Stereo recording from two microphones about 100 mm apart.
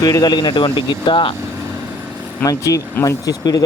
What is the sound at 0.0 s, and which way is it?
A man's voice, 40° left (ahead or behind).